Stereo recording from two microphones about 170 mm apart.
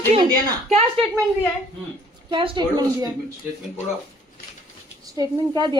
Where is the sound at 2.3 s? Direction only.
30° right (ahead or behind).